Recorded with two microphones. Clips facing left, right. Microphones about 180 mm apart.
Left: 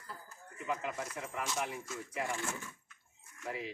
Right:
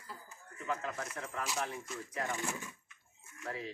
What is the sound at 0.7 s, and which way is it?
Speech, 15° left (ahead or behind).